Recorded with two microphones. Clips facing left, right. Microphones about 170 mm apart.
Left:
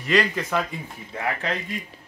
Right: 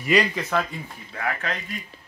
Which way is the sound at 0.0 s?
5° right (ahead or behind).